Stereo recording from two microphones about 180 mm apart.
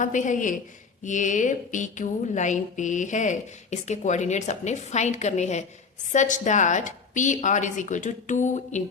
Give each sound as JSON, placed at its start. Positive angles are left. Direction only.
{"t": 0.0, "sound": "speech", "side_deg": 45}